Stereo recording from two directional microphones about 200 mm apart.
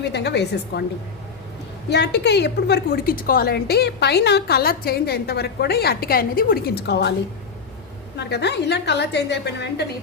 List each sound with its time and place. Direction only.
0.0 s a woman's voice: 60° left (ahead or behind)
1.9 s a woman's voice: 55° left (ahead or behind)
8.2 s a woman's voice: 60° left (ahead or behind)